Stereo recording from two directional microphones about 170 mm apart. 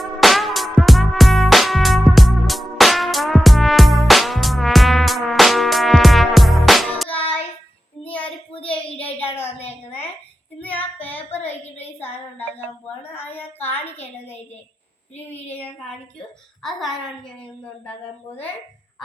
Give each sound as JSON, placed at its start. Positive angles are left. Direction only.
{"t": 0.0, "sound": "music", "side_deg": 0}
{"t": 8.0, "sound": "child singing", "side_deg": 10}
{"t": 8.6, "sound": "a sound", "side_deg": 10}
{"t": 9.6, "sound": "a sound", "side_deg": 35}
{"t": 10.6, "sound": "child singing", "side_deg": 10}
{"t": 16.6, "sound": "a woman's voice", "side_deg": 0}